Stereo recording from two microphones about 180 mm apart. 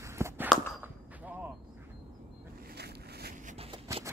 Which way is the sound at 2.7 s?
65° right (ahead or behind).